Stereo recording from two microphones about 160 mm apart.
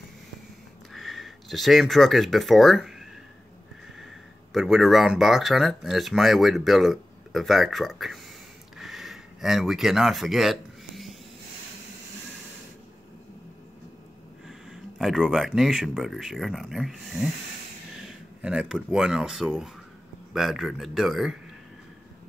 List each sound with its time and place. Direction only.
0.9 s speech: centre (ahead or behind)
8.7 s a sound: centre (ahead or behind)
14.7 s speech: centre (ahead or behind)
18.4 s speech: 5° right (ahead or behind)